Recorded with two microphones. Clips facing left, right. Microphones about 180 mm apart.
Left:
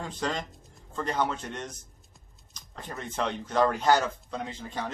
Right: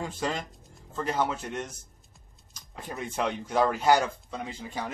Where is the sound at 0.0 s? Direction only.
5° right (ahead or behind).